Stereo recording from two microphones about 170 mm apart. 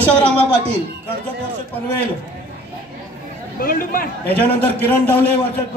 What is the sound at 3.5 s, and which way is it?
Speech, 55° left (ahead or behind).